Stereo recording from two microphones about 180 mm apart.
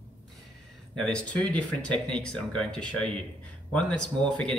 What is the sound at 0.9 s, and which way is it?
Speech, 5° left (ahead or behind).